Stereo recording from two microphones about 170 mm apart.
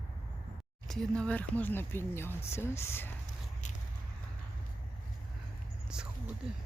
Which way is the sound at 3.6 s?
45° left (ahead or behind).